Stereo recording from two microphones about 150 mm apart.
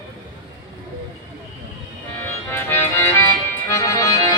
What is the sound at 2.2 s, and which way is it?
Music, 15° left (ahead or behind).